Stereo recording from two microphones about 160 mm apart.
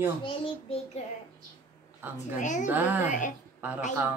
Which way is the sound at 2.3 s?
50° left (ahead or behind).